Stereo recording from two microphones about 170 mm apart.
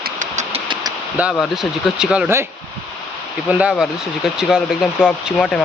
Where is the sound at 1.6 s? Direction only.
5° right (ahead or behind).